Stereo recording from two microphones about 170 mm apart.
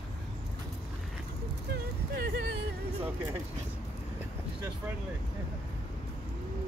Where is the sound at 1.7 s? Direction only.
65° right (ahead or behind).